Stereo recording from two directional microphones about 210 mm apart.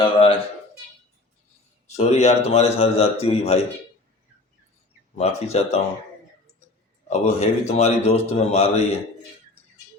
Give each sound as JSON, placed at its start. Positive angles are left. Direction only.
{"t": 0.0, "sound": "speech", "side_deg": 25}
{"t": 2.0, "sound": "speech", "side_deg": 30}
{"t": 5.1, "sound": "speech", "side_deg": 30}
{"t": 7.1, "sound": "speech", "side_deg": 30}